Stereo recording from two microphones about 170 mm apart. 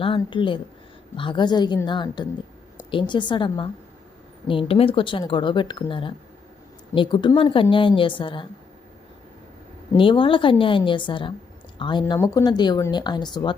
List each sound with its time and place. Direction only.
0.0 s a woman's voice: 30° left (ahead or behind)
9.9 s speech: 30° left (ahead or behind)